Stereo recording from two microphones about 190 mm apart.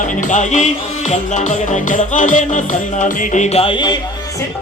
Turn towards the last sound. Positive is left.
turn(degrees=25)  # may be behind; listen again after turning